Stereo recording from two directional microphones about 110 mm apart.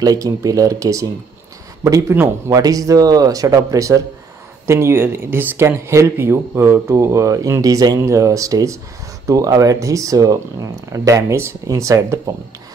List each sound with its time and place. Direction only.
0.0 s speech: 35° right (ahead or behind)